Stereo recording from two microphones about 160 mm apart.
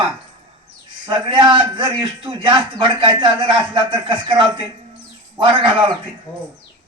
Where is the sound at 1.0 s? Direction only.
30° right (ahead or behind).